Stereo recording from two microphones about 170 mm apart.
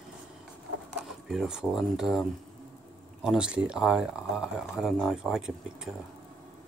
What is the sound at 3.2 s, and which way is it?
Speech, 5° right (ahead or behind).